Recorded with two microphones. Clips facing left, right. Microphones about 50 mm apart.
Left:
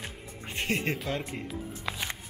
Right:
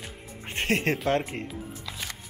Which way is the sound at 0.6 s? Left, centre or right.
Right.